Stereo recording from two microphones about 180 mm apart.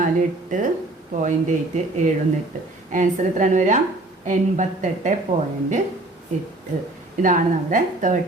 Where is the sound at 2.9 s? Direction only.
45° right (ahead or behind).